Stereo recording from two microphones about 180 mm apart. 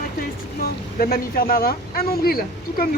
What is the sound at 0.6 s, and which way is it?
Speech, 55° left (ahead or behind).